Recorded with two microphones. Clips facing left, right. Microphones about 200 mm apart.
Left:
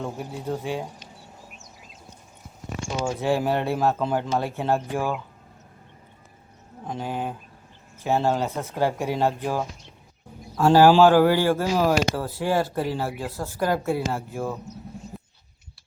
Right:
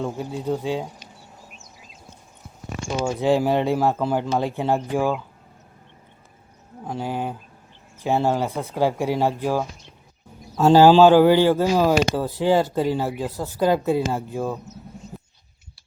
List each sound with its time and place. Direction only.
0.0 s speech: 15° right (ahead or behind)
3.2 s speech: 15° right (ahead or behind)
6.8 s speech: 10° right (ahead or behind)
10.6 s speech: 25° right (ahead or behind)
15.1 s a sound: centre (ahead or behind)